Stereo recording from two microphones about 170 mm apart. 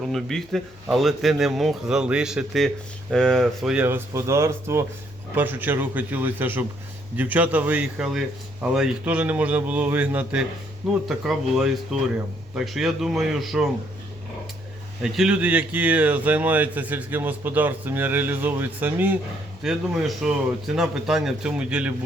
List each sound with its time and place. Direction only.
0.0 s speech: centre (ahead or behind)
15.0 s speech: 5° right (ahead or behind)